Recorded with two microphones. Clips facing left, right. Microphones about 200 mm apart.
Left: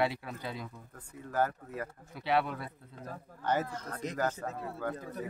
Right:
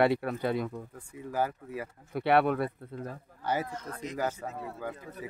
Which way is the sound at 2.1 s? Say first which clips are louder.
Right 6 dB; 60° right (ahead or behind).